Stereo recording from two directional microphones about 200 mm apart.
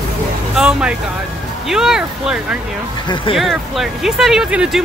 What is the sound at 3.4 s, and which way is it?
Speech, centre (ahead or behind).